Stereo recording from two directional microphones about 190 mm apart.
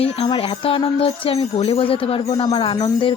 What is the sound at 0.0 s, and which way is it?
Speech, 30° left (ahead or behind).